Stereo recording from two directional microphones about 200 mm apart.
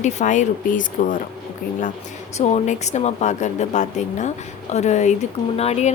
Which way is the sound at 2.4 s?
35° left (ahead or behind).